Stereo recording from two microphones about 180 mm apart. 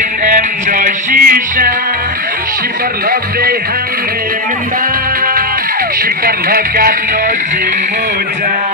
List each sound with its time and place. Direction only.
0.2 s music: 45° right (ahead or behind)
6.2 s music: 55° right (ahead or behind)